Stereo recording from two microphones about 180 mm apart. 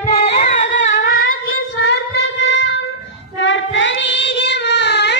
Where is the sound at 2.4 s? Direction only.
90° left.